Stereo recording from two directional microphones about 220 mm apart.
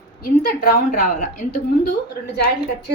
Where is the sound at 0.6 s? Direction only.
40° left (ahead or behind).